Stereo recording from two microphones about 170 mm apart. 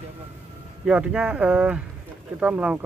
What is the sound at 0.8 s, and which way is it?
Speech, 5° right (ahead or behind).